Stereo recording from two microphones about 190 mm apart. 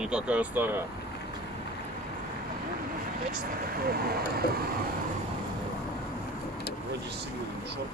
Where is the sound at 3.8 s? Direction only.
55° right (ahead or behind).